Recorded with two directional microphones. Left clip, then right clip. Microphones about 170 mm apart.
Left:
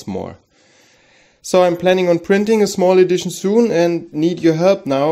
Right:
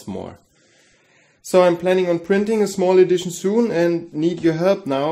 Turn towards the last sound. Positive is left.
turn(degrees=30)  # may be behind; listen again after turning